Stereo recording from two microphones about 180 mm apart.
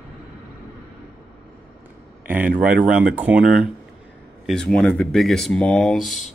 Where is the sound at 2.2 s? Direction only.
10° right (ahead or behind).